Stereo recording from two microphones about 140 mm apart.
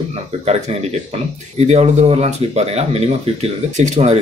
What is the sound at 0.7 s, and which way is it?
Speech, 50° right (ahead or behind).